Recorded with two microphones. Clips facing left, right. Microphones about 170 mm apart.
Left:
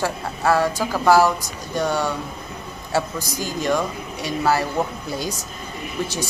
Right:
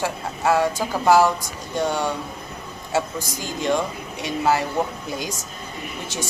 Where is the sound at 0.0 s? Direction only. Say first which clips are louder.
Left 1 dB; 20° right (ahead or behind).